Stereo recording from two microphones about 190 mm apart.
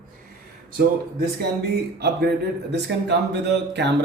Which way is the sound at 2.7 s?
65° right (ahead or behind).